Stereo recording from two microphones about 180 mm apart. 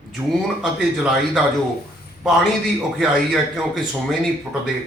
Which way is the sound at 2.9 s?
Centre (ahead or behind).